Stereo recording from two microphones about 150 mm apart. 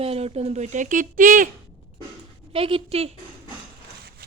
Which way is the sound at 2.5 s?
35° right (ahead or behind).